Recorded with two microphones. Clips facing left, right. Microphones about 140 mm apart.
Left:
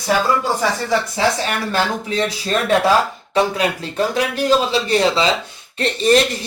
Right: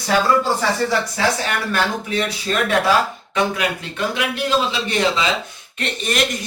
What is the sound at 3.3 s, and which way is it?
Speech, 30° left (ahead or behind).